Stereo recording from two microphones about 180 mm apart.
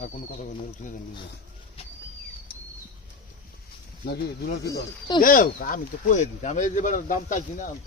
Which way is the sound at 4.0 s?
60° left (ahead or behind).